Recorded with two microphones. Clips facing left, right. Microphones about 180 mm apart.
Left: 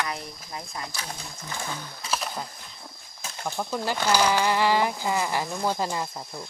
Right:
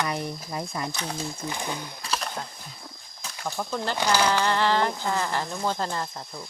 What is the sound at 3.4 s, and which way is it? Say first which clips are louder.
Speech: left 1 dB; 10° left (ahead or behind).